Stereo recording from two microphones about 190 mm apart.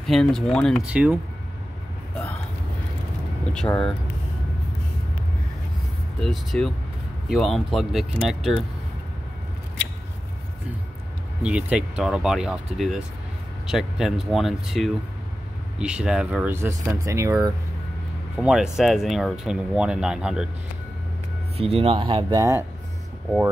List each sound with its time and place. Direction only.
0.0 s speech: centre (ahead or behind)
3.5 s speech: 5° left (ahead or behind)
6.2 s speech: centre (ahead or behind)
11.4 s speech: 5° right (ahead or behind)
18.4 s speech: 5° right (ahead or behind)
21.5 s speech: 30° right (ahead or behind); by 22.7 s 15° right (ahead or behind)